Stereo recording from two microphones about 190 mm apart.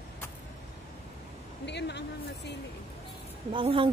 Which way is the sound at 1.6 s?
65° left (ahead or behind).